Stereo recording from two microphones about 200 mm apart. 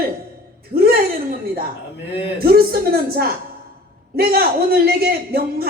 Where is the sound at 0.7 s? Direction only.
45° right (ahead or behind).